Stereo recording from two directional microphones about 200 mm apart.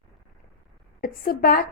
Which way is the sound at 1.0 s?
45° left (ahead or behind).